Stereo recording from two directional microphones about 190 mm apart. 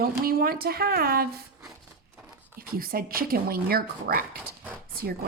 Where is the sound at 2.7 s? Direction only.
50° right (ahead or behind).